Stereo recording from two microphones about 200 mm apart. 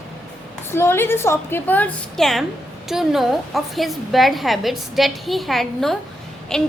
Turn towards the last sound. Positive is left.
turn(degrees=5)  # may be behind; listen again after turning